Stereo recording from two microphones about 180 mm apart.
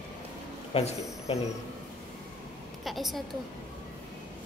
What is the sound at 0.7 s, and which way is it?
Speech, 35° left (ahead or behind).